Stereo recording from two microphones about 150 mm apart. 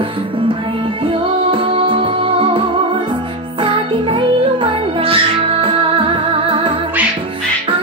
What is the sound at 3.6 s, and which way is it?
Music, 35° right (ahead or behind).